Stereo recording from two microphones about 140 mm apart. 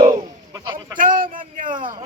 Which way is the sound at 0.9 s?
75° right (ahead or behind).